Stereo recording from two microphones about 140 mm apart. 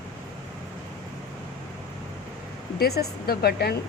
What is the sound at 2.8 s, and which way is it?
Speech, 90° left.